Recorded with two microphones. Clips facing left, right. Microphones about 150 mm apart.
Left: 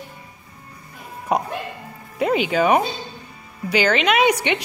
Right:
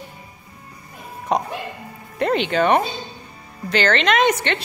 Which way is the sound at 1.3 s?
10° left (ahead or behind).